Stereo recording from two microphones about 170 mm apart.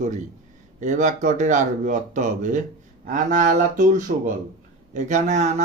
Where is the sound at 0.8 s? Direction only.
45° right (ahead or behind).